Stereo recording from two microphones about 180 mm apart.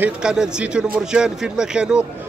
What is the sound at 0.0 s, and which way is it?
Speech, 5° right (ahead or behind).